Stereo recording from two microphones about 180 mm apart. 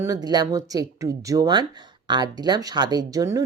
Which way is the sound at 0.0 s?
20° right (ahead or behind).